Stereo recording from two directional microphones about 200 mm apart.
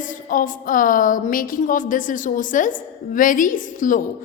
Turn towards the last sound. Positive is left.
turn(degrees=40)  # may be behind; listen again after turning